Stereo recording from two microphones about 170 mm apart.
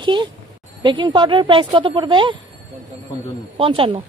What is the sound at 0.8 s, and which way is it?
Speech, 25° right (ahead or behind).